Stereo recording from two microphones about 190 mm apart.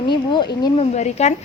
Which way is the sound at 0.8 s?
35° left (ahead or behind).